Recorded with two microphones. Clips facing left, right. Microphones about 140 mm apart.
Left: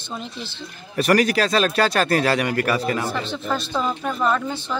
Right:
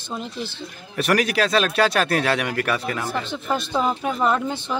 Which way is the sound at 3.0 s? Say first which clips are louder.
Even; 15° right (ahead or behind).